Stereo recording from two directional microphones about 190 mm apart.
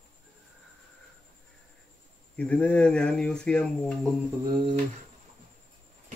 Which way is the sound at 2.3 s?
5° left (ahead or behind).